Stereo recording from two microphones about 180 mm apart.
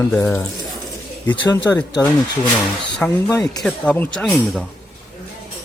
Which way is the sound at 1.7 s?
10° left (ahead or behind).